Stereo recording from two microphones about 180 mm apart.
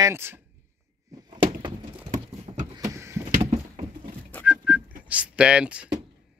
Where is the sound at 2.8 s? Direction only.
15° right (ahead or behind).